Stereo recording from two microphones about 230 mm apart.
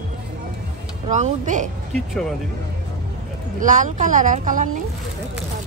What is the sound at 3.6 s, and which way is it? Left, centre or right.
Speech, right.